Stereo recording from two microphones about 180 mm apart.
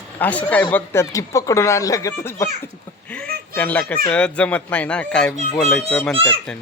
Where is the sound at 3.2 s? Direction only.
55° right (ahead or behind).